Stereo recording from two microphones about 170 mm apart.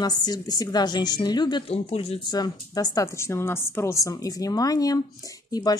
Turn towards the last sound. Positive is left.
turn(degrees=25)  # may be behind; listen again after turning